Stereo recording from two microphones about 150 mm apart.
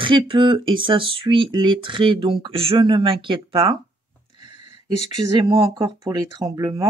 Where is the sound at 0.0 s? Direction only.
35° right (ahead or behind).